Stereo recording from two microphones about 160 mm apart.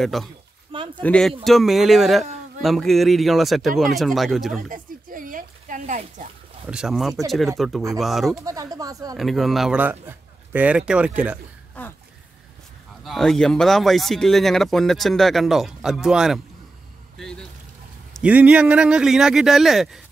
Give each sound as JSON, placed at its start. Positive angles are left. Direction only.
{"t": 0.0, "sound": "speech", "side_deg": 0}
{"t": 0.7, "sound": "a sound", "side_deg": -35}
{"t": 1.0, "sound": "speech", "side_deg": 5}
{"t": 4.6, "sound": "a sound", "side_deg": -60}
{"t": 6.7, "sound": "speech", "side_deg": -5}
{"t": 8.5, "sound": "speech", "side_deg": -20}
{"t": 9.1, "sound": "a man's voice", "side_deg": 0}
{"t": 11.8, "sound": "a sound", "side_deg": 10}
{"t": 13.0, "sound": "speech", "side_deg": 0}
{"t": 18.2, "sound": "speech", "side_deg": -10}